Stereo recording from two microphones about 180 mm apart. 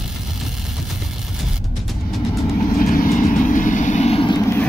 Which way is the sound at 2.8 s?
50° left (ahead or behind).